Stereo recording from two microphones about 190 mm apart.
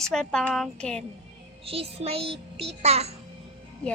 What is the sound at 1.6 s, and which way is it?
Music, 30° right (ahead or behind).